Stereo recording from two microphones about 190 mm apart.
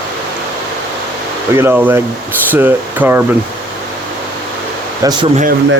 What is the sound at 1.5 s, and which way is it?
Speech, 10° right (ahead or behind).